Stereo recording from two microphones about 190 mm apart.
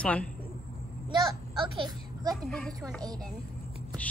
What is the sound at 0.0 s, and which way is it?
Speech, 5° left (ahead or behind).